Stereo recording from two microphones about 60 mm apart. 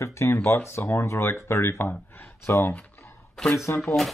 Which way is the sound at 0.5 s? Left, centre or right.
Left.